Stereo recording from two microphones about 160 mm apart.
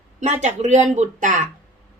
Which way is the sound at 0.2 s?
45° right (ahead or behind).